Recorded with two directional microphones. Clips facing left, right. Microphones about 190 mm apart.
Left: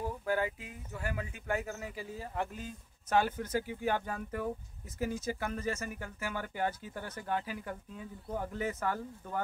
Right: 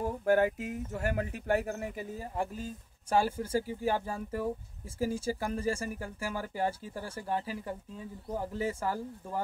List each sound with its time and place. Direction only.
0.0 s speech: 45° right (ahead or behind)